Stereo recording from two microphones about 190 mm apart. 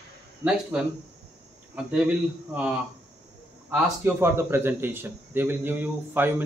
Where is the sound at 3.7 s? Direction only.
10° right (ahead or behind).